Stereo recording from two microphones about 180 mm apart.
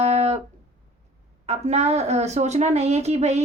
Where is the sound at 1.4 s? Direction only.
35° right (ahead or behind).